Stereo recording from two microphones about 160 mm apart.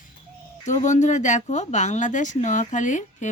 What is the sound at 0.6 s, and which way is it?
Speech, 50° left (ahead or behind).